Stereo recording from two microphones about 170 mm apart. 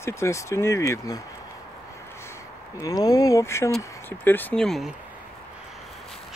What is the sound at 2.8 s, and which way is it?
Speech, 20° left (ahead or behind).